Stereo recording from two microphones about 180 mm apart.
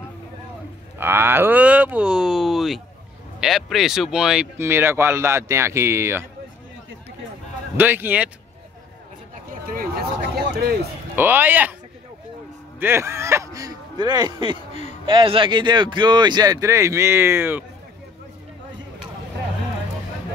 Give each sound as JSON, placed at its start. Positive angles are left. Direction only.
{"t": 0.9, "sound": "speech", "side_deg": -10}
{"t": 7.7, "sound": "speech", "side_deg": -10}
{"t": 9.5, "sound": "a sound", "side_deg": -50}
{"t": 11.1, "sound": "speech", "side_deg": -10}
{"t": 12.7, "sound": "speech", "side_deg": -15}
{"t": 14.7, "sound": "a sound", "side_deg": 35}
{"t": 15.0, "sound": "speech", "side_deg": -30}